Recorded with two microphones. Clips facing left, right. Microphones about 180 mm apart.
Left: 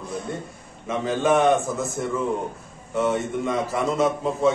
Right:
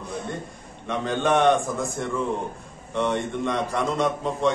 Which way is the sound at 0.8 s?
5° left (ahead or behind).